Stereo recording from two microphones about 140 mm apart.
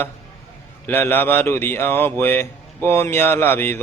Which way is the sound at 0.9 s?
15° left (ahead or behind).